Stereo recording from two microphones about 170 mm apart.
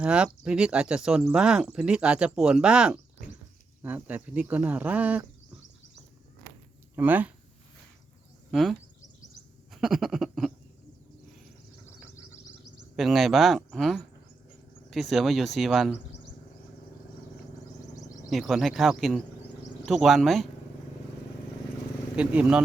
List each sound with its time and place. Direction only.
0.0 s speech: 5° right (ahead or behind)
6.9 s speech: 10° right (ahead or behind)
8.4 s speech: centre (ahead or behind)
11.9 s a sound: 15° left (ahead or behind)
13.0 s speech: centre (ahead or behind)
17.9 s a sound: 20° left (ahead or behind)
18.3 s speech: centre (ahead or behind)
22.1 s speech: 5° right (ahead or behind)